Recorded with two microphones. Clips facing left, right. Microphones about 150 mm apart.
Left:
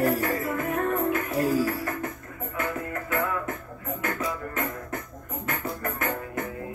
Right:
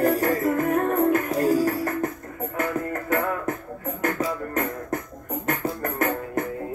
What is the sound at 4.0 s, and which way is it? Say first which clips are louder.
Music: right 5 dB; 40° right (ahead or behind).